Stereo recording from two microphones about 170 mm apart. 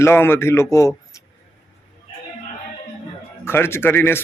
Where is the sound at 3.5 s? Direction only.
15° left (ahead or behind).